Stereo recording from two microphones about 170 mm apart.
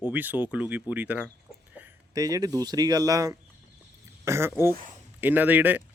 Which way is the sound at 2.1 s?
20° right (ahead or behind).